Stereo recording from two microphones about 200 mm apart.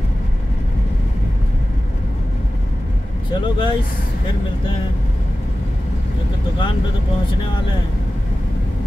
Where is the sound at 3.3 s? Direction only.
25° left (ahead or behind).